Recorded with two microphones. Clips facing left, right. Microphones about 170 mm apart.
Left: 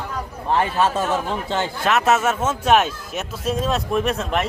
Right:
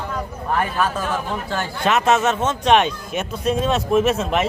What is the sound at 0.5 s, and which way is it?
Speech, 25° left (ahead or behind).